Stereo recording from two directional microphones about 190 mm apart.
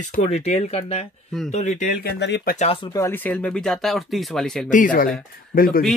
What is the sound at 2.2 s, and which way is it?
Speech, 65° left (ahead or behind).